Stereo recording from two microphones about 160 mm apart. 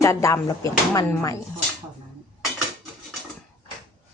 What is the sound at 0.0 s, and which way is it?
A woman's voice, 20° left (ahead or behind).